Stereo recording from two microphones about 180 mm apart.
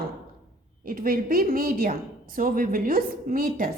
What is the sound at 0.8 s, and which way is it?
A woman's voice, 50° right (ahead or behind).